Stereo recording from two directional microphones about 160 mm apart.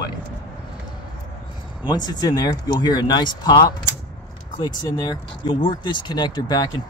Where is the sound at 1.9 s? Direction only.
25° left (ahead or behind).